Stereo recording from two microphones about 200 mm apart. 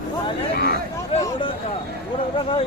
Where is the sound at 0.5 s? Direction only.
50° left (ahead or behind).